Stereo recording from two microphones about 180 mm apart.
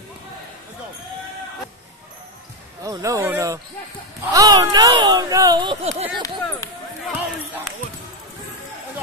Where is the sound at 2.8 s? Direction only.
20° right (ahead or behind).